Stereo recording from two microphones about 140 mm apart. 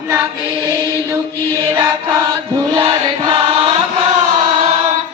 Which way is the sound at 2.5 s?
30° right (ahead or behind).